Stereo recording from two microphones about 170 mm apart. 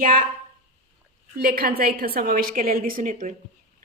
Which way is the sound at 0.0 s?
55° right (ahead or behind).